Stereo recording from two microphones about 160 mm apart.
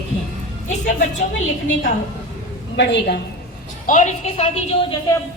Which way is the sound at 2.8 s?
90° left.